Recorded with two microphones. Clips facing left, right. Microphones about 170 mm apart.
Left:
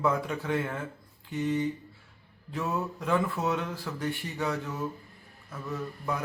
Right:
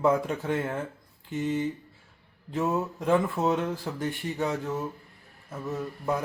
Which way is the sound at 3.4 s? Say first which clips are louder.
Right 4 dB; 45° right (ahead or behind).